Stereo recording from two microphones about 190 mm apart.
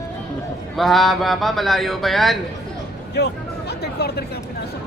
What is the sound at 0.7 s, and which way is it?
Speech, centre (ahead or behind).